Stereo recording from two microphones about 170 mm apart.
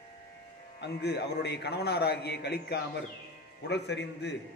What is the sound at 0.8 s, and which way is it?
A man's voice, 80° left.